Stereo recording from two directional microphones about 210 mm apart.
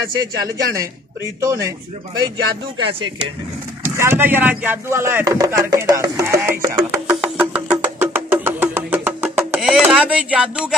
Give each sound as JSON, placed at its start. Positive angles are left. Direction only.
{"t": 0.4, "sound": "speech", "side_deg": -15}
{"t": 3.8, "sound": "speech", "side_deg": -10}
{"t": 6.6, "sound": "music", "side_deg": -10}